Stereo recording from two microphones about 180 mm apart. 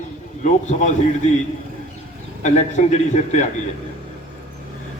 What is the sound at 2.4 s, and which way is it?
A man's voice, 40° left (ahead or behind).